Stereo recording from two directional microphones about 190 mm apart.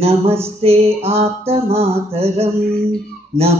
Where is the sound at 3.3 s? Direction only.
15° right (ahead or behind).